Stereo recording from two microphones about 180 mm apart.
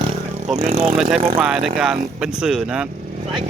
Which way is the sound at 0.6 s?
35° right (ahead or behind).